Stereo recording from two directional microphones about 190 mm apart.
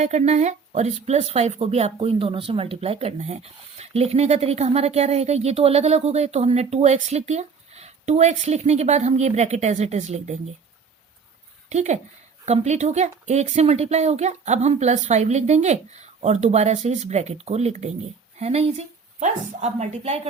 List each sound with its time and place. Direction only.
0.0 s speech: 35° right (ahead or behind)
11.7 s speech: 35° right (ahead or behind)